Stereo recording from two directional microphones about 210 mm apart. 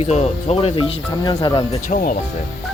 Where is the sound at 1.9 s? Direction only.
45° left (ahead or behind).